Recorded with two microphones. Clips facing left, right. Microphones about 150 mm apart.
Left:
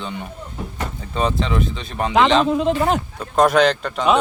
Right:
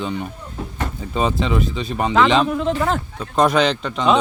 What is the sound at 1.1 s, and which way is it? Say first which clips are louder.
Speech: right 1 dB; 5° right (ahead or behind).